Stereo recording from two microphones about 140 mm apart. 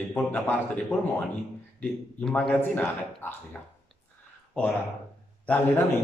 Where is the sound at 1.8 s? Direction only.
5° left (ahead or behind).